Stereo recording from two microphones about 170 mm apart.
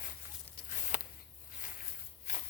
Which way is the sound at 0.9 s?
45° left (ahead or behind).